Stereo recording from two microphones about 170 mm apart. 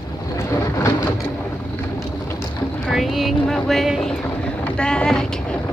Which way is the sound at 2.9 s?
Centre (ahead or behind).